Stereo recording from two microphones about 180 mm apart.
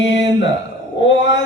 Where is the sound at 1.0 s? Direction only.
90° left.